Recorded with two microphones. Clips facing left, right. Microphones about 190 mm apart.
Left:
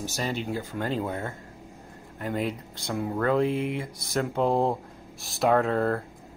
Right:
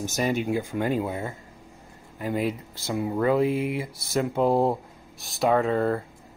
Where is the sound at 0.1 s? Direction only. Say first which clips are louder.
Right 7 dB; 15° right (ahead or behind).